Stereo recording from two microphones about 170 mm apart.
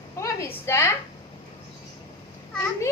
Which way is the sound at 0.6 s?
15° left (ahead or behind).